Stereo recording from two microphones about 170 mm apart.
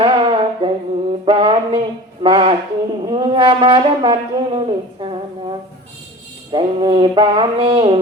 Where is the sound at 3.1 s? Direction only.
30° right (ahead or behind).